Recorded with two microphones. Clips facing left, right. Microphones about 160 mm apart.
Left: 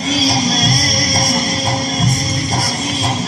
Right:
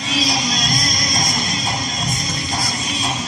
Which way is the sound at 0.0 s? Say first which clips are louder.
Left 6 dB; 35° left (ahead or behind).